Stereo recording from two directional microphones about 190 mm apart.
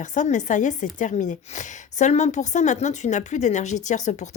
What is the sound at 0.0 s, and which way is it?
Speech, 40° left (ahead or behind).